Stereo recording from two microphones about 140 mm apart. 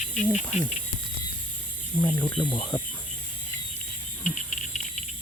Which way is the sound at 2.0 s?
30° left (ahead or behind).